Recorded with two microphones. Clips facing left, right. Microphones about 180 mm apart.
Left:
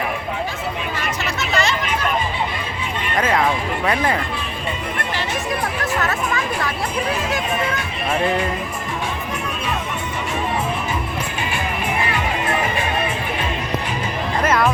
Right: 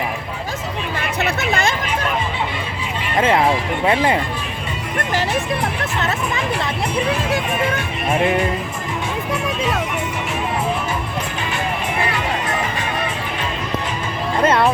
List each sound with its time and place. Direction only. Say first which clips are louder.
1.2 s a sound: right 3 dB; 55° right (ahead or behind)
3.2 s speech: right 3 dB; 25° right (ahead or behind)
5.8 s speech: even; 25° right (ahead or behind)
14.4 s music: right 3 dB; 30° right (ahead or behind)